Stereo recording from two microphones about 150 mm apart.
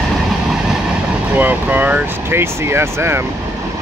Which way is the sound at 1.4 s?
10° right (ahead or behind).